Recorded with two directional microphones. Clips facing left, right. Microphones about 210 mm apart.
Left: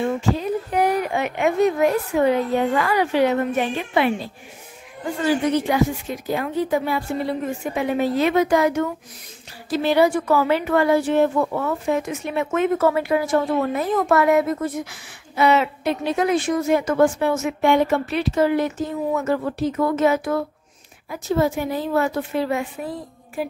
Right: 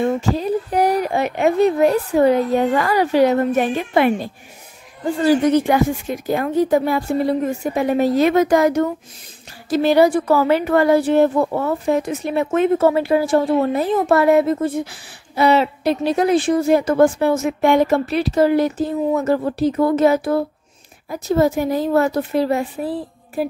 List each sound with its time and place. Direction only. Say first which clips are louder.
0.4 s a woman's voice: right 3 dB; 35° right (ahead or behind)